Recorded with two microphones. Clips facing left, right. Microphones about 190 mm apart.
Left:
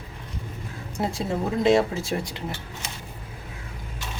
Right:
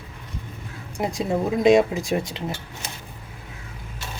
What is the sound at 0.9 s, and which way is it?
Speech, 15° right (ahead or behind).